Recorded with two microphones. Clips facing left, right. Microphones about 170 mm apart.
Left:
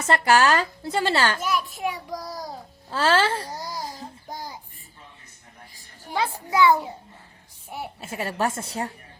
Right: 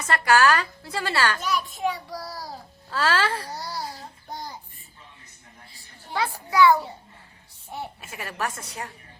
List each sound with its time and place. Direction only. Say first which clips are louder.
0.1 s a woman's voice: left 1 dB; 25° left (ahead or behind)
1.4 s a child's voice: left 1 dB; 5° left (ahead or behind)
4.3 s child singing: even; 10° left (ahead or behind)
6.1 s a child's voice: left 2 dB; 15° left (ahead or behind)
8.0 s a woman's voice: left 8 dB; 30° left (ahead or behind)